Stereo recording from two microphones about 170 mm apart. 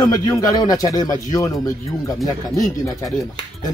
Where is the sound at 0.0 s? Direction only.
20° left (ahead or behind).